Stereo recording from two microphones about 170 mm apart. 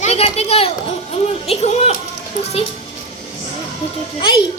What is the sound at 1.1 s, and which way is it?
Speech, 35° left (ahead or behind).